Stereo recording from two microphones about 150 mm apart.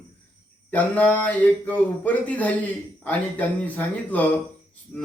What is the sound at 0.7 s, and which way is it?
Speech, 10° left (ahead or behind).